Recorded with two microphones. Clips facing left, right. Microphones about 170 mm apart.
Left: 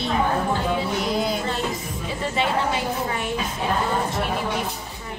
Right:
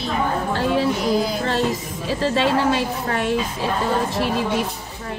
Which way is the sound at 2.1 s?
85° right.